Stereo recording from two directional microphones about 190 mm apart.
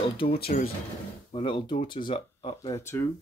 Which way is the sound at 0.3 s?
55° left (ahead or behind).